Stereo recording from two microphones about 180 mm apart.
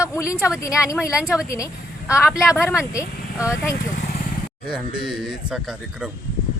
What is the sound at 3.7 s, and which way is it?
Vehicle, 45° left (ahead or behind).